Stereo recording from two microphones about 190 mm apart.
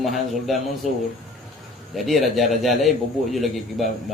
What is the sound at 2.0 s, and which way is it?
A man's voice, centre (ahead or behind).